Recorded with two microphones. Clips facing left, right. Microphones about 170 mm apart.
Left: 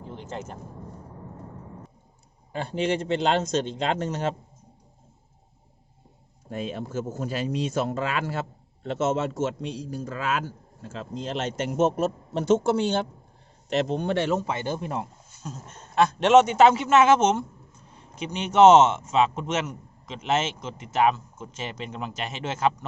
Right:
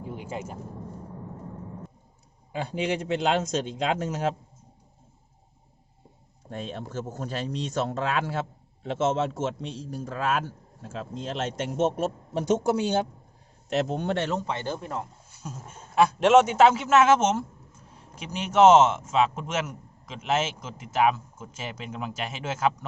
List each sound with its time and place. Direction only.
0.0 s vehicle: 10° right (ahead or behind)
2.5 s a man's voice: 10° right (ahead or behind)
6.5 s speech: 5° left (ahead or behind)
13.7 s speech: 5° right (ahead or behind); by 15.0 s 15° left (ahead or behind)
15.4 s speech: 10° right (ahead or behind)